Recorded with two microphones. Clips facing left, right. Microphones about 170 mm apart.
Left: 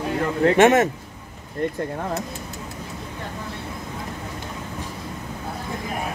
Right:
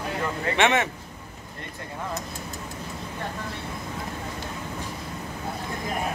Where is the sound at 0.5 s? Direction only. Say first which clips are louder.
Left 6 dB; 45° left (ahead or behind).